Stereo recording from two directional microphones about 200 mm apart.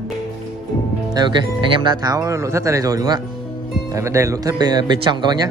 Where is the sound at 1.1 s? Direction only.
20° right (ahead or behind).